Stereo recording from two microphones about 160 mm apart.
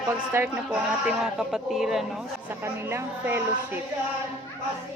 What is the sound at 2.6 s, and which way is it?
A woman's voice, 15° right (ahead or behind).